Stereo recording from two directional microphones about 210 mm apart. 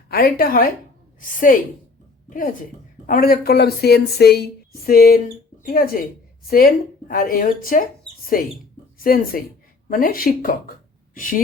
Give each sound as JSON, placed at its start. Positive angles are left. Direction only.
{"t": 0.1, "sound": "a woman's voice", "side_deg": 45}